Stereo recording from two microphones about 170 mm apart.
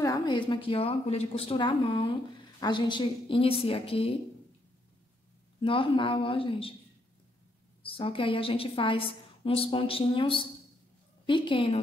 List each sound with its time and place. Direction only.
0.0 s a woman's voice: 20° left (ahead or behind)
5.6 s a woman's voice: 30° left (ahead or behind)
7.8 s a woman's voice: 30° left (ahead or behind)